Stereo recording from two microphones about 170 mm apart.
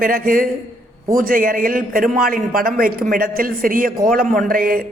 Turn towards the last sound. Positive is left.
turn(degrees=-60)  # may be behind; listen again after turning